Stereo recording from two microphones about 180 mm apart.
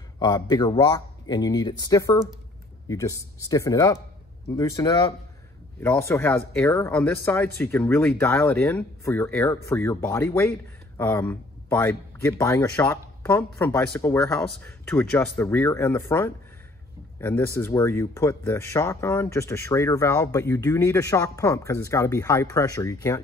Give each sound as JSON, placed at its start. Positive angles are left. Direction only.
{"t": 0.2, "sound": "speech", "side_deg": 20}